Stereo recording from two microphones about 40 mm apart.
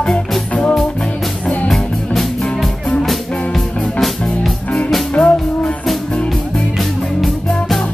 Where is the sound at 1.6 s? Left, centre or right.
Centre.